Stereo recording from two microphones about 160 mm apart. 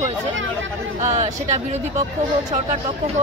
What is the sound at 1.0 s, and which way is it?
Speech, 45° right (ahead or behind).